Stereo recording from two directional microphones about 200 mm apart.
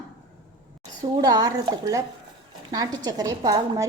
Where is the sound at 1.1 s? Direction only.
20° right (ahead or behind).